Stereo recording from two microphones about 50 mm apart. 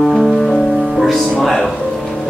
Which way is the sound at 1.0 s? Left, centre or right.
Centre.